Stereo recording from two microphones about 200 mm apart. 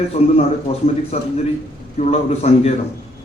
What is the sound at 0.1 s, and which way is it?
A man's voice, 30° left (ahead or behind).